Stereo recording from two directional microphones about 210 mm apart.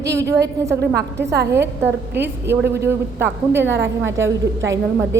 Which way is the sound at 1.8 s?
10° right (ahead or behind).